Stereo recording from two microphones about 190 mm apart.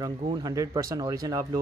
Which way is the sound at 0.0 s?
20° right (ahead or behind).